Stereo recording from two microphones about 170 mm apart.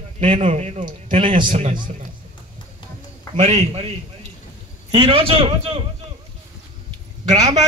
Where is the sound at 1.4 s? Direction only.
45° right (ahead or behind).